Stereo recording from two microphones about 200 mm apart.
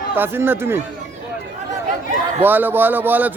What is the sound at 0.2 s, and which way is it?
Speech, 10° right (ahead or behind).